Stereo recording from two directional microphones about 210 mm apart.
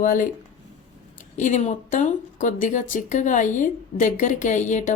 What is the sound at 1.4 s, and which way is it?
Speech, 35° left (ahead or behind).